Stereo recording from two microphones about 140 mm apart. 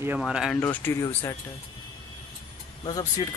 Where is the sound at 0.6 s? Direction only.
15° left (ahead or behind).